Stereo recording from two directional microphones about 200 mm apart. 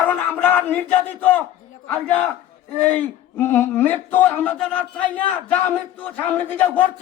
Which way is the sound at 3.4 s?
10° left (ahead or behind).